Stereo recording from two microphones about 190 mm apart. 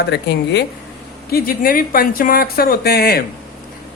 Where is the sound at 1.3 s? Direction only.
50° left (ahead or behind).